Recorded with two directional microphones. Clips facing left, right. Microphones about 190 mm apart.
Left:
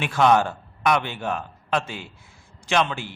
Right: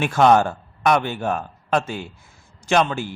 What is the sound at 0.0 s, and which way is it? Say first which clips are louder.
A man's voice: right 3 dB; 45° right (ahead or behind).